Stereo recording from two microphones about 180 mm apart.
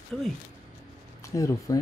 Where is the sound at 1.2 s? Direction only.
15° left (ahead or behind).